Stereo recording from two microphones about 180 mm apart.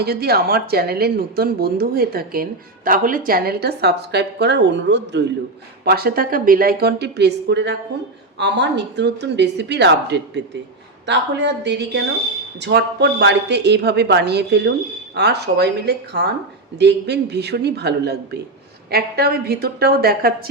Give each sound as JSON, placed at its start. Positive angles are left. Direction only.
{"t": 0.0, "sound": "speech", "side_deg": -60}
{"t": 5.8, "sound": "a woman's voice", "side_deg": -60}